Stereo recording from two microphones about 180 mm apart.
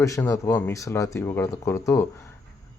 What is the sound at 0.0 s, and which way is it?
Speech, 15° left (ahead or behind).